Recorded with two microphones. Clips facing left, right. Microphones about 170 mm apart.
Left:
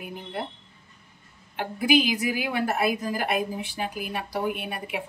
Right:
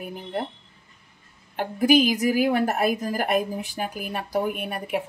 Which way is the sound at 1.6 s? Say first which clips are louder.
Right 4 dB; 40° right (ahead or behind).